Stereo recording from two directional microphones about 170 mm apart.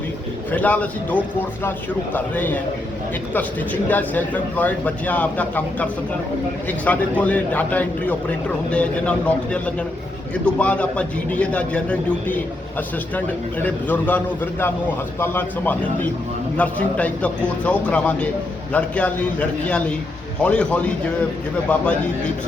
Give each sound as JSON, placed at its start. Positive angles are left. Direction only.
{"t": 0.5, "sound": "speech", "side_deg": 10}